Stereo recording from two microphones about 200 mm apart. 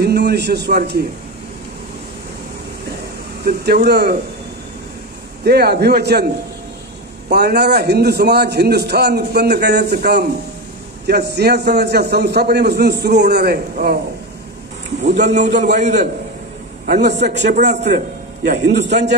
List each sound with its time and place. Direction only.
0.0 s a man's voice: 55° right (ahead or behind)
3.4 s speech: 55° right (ahead or behind)
5.4 s a man's voice: 55° right (ahead or behind)
7.2 s a man's voice: 55° right (ahead or behind)
15.3 s a man's voice: 35° right (ahead or behind)
17.1 s a man's voice: 60° right (ahead or behind)